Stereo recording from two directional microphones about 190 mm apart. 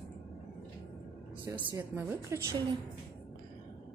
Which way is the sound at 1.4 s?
10° right (ahead or behind).